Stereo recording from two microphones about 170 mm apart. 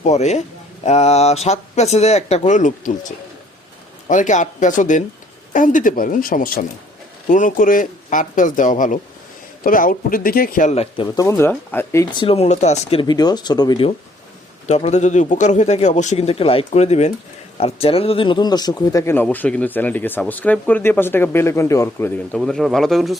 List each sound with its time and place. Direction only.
0.0 s speech: 40° left (ahead or behind)
4.1 s a man's voice: 45° left (ahead or behind)
11.0 s speech: 20° left (ahead or behind)
12.1 s speech: 35° left (ahead or behind)
14.7 s speech: 40° left (ahead or behind); by 22.4 s 15° left (ahead or behind)
22.4 s speech: centre (ahead or behind)